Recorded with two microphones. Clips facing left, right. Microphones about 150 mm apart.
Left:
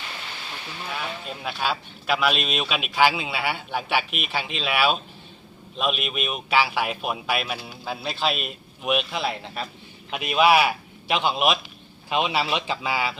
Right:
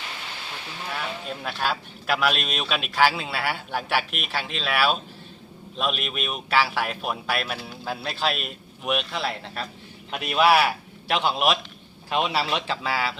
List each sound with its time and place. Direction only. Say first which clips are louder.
1.5 s a man's voice: left 1 dB; centre (ahead or behind)